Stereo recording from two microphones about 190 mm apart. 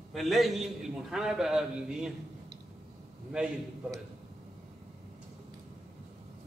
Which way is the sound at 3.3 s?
5° right (ahead or behind).